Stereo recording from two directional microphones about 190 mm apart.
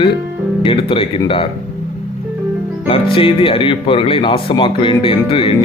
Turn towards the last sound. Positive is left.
turn(degrees=30)  # may be behind; listen again after turning